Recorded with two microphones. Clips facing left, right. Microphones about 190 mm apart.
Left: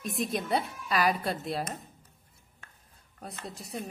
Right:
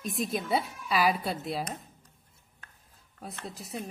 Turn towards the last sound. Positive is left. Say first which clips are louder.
# even
turn(degrees=0)  # may be behind; listen again after turning